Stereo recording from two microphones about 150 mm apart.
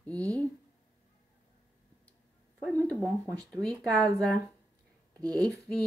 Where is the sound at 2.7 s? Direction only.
10° left (ahead or behind).